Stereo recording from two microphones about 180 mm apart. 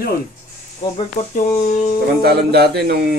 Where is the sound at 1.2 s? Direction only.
40° left (ahead or behind).